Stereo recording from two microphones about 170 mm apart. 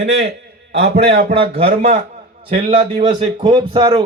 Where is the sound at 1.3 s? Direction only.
35° right (ahead or behind).